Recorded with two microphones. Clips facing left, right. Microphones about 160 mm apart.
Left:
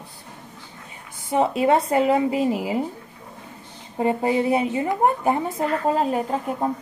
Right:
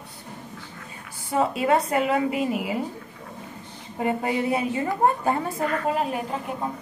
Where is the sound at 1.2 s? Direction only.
25° left (ahead or behind).